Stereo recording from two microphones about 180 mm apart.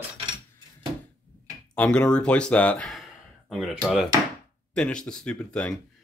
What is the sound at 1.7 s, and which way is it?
Speech, 5° left (ahead or behind).